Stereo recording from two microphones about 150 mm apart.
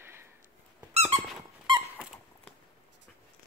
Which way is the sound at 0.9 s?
45° right (ahead or behind).